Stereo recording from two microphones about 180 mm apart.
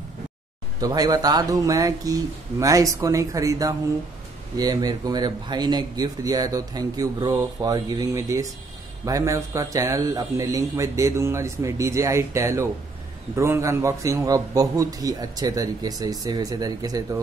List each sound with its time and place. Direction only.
0.7 s a man's voice: 20° right (ahead or behind)